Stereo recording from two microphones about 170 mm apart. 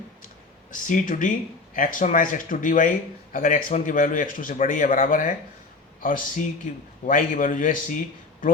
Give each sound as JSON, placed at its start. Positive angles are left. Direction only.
{"t": 0.7, "sound": "speech", "side_deg": 50}